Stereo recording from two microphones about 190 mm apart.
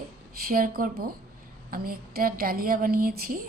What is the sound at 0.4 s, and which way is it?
A woman's voice, 50° right (ahead or behind).